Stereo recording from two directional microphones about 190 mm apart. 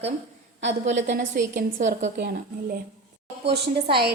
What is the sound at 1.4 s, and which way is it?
Speech, 60° right (ahead or behind).